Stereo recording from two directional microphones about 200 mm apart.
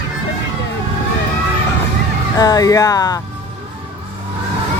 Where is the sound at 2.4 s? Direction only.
20° left (ahead or behind).